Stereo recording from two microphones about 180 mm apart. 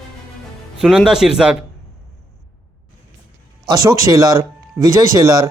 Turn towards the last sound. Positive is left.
turn(degrees=-20)  # may be behind; listen again after turning